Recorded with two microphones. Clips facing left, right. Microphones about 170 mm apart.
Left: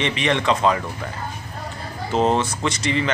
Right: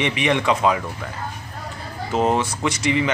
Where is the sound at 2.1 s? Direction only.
10° right (ahead or behind).